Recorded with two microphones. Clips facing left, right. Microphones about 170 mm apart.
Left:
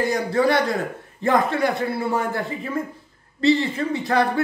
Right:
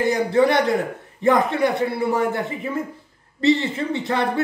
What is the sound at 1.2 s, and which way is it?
Speech, 20° right (ahead or behind).